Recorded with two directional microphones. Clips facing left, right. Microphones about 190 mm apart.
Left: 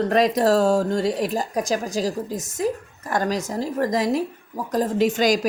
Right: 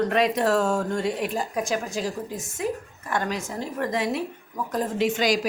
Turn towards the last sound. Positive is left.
turn(degrees=45)  # may be behind; listen again after turning